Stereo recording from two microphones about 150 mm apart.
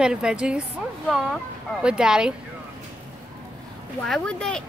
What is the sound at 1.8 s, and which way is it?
Speech, 5° right (ahead or behind).